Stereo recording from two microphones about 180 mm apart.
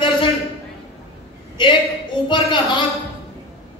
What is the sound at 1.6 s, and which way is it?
A man's voice, 25° left (ahead or behind).